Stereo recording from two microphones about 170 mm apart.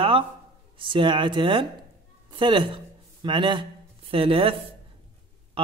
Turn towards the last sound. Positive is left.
turn(degrees=-30)  # may be behind; listen again after turning